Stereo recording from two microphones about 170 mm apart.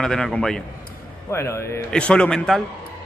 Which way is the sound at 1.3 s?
15° left (ahead or behind).